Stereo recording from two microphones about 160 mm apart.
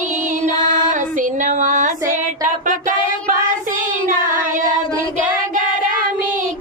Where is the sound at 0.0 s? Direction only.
50° right (ahead or behind).